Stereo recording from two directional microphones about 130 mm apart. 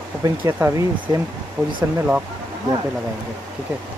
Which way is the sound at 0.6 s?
25° right (ahead or behind).